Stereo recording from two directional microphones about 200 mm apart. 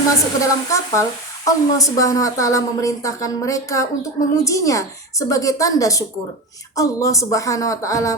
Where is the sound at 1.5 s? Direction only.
15° left (ahead or behind).